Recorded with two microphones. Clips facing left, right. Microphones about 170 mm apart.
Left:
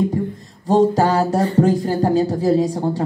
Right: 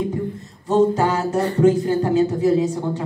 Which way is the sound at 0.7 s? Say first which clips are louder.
Left 2 dB; 35° left (ahead or behind).